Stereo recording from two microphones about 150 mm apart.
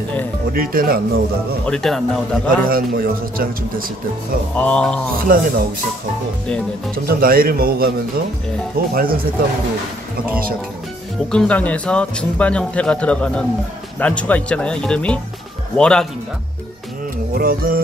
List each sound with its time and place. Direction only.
0.5 s a man's voice: 75° right (ahead or behind)
1.7 s a man's voice: 5° left (ahead or behind)
2.6 s a man's voice: 75° right (ahead or behind)
4.6 s a man's voice: 10° left (ahead or behind)
5.1 s a man's voice: 70° right (ahead or behind)
7.1 s a man's voice: 75° right (ahead or behind)
8.9 s a man's voice: 75° right (ahead or behind)
11.3 s a man's voice: 10° left (ahead or behind)
17.3 s a man's voice: 75° right (ahead or behind)